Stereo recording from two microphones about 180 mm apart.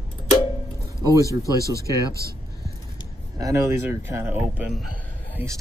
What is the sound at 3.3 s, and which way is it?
Speech, 20° right (ahead or behind).